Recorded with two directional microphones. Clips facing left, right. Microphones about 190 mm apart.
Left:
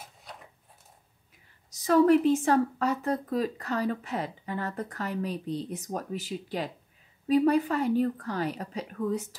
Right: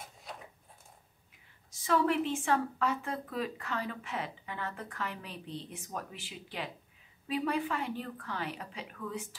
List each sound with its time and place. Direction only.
1.7 s a woman's voice: 40° left (ahead or behind)